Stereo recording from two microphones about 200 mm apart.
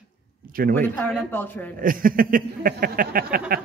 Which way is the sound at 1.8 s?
45° right (ahead or behind).